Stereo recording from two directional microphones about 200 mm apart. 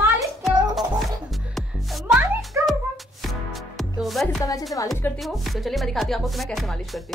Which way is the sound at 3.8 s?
Centre (ahead or behind).